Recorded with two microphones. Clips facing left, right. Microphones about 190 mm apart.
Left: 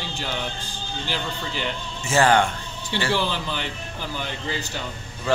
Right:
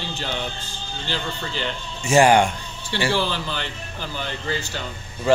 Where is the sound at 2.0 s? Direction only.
15° right (ahead or behind).